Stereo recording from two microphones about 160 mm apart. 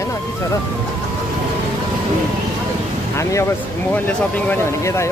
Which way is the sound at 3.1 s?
15° left (ahead or behind).